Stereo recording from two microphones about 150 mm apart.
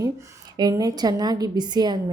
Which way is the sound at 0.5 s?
25° right (ahead or behind).